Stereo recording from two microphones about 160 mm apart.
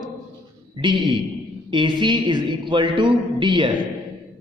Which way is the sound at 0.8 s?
30° right (ahead or behind).